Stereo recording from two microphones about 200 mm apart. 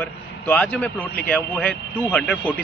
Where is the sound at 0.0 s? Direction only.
5° left (ahead or behind).